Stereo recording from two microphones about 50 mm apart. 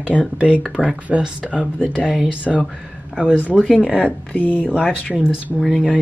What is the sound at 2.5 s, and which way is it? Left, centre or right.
Speech, centre.